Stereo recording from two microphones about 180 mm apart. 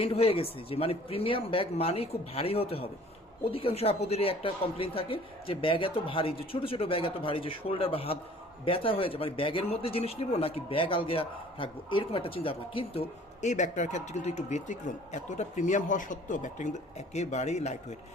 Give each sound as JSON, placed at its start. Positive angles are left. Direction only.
{"t": 0.0, "sound": "speech", "side_deg": 30}
{"t": 13.4, "sound": "speech", "side_deg": 40}